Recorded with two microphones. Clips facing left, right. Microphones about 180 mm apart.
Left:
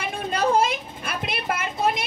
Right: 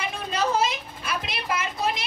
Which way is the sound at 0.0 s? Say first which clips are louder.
Left 3 dB; 55° left (ahead or behind).